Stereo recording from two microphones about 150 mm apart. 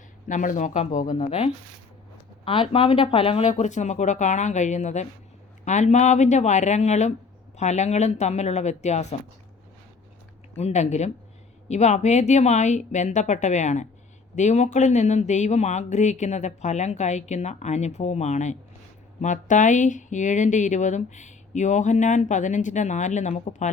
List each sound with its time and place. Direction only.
0.3 s speech: 55° left (ahead or behind)
2.4 s speech: 35° left (ahead or behind)
3.5 s speech: 55° left (ahead or behind)
10.6 s speech: 50° left (ahead or behind)